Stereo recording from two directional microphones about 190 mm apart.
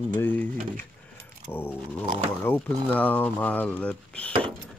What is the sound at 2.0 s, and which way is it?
Speech, 40° right (ahead or behind).